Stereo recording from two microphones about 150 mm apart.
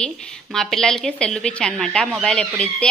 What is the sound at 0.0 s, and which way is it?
A woman's voice, 5° left (ahead or behind).